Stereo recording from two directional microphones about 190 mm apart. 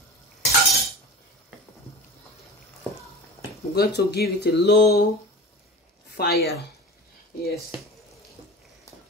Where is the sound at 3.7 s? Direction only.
55° left (ahead or behind).